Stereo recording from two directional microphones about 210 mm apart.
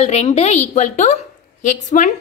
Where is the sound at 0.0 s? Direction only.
30° left (ahead or behind).